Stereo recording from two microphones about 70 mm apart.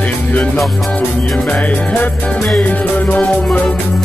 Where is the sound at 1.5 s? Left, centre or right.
Left.